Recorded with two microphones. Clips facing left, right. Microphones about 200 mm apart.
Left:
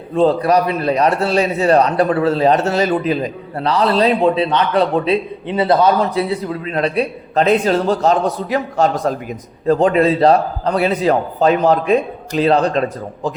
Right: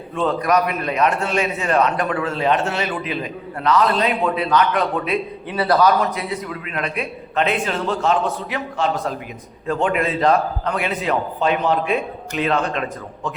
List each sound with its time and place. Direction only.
0.1 s a man's voice: 35° left (ahead or behind)